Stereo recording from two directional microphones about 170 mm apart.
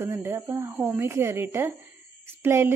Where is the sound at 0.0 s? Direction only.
15° right (ahead or behind).